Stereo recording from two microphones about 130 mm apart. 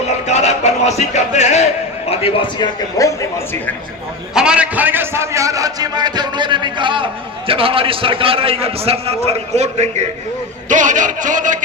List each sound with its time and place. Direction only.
0.3 s music: 60° left (ahead or behind)
2.0 s a man's voice: 50° left (ahead or behind)
2.6 s speech: 25° left (ahead or behind)
4.4 s a man's voice: 10° right (ahead or behind); by 10.1 s 60° right (ahead or behind)
10.7 s speech: 75° right (ahead or behind)